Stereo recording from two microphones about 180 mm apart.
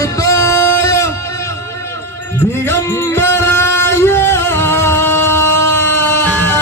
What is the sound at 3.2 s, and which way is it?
Music, 15° left (ahead or behind).